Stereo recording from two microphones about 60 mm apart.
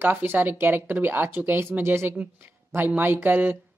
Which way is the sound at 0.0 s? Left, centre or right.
Right.